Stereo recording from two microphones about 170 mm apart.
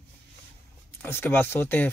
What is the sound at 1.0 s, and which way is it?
Speech, 15° left (ahead or behind).